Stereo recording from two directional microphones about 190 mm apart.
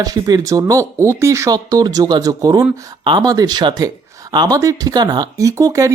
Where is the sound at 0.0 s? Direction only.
20° right (ahead or behind).